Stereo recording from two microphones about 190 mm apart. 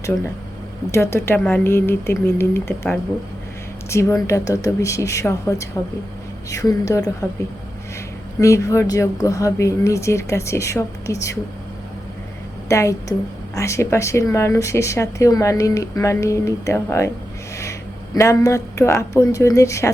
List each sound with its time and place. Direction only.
0.9 s speech: 15° left (ahead or behind)
8.4 s speech: 15° left (ahead or behind)
12.6 s speech: 15° left (ahead or behind)